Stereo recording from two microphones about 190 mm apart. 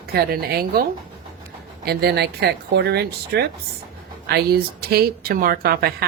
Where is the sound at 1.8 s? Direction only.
55° right (ahead or behind).